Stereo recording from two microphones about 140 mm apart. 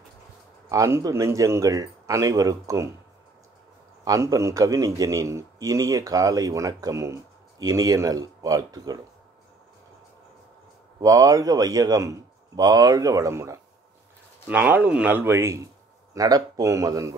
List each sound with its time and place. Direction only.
0.7 s a man's voice: 20° right (ahead or behind)
4.0 s a man's voice: 25° right (ahead or behind)
11.0 s a man's voice: 25° right (ahead or behind)